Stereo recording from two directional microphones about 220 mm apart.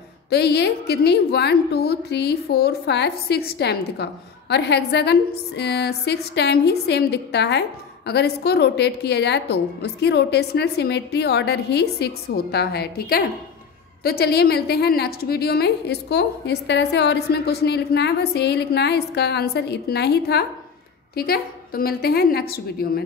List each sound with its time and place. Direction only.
0.3 s a woman's voice: 50° left (ahead or behind)